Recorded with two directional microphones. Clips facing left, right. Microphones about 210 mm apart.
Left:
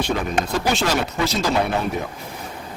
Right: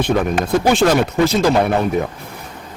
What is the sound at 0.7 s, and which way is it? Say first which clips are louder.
Speech: right 7 dB; 55° right (ahead or behind).